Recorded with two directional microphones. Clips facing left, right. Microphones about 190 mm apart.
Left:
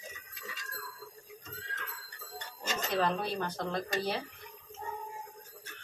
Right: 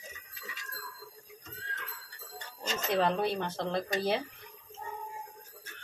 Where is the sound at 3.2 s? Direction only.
30° right (ahead or behind).